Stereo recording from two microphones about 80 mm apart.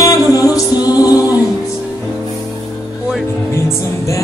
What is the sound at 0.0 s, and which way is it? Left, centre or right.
Music, left.